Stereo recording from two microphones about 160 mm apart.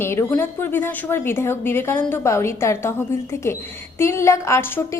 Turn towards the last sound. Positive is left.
turn(degrees=15)  # may be behind; listen again after turning